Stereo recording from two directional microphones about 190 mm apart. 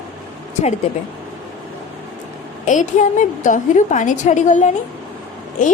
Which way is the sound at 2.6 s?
40° left (ahead or behind).